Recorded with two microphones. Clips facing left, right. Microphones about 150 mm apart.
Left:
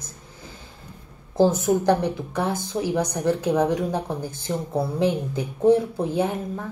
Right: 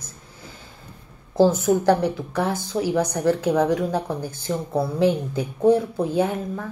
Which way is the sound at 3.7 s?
20° left (ahead or behind).